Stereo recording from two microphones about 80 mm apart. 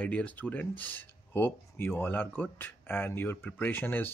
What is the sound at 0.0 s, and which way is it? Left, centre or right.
Speech, centre.